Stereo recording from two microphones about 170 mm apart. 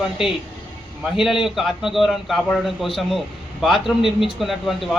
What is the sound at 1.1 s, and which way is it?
A man's voice, centre (ahead or behind).